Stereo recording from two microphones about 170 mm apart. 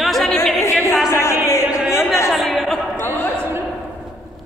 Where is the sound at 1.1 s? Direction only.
15° left (ahead or behind).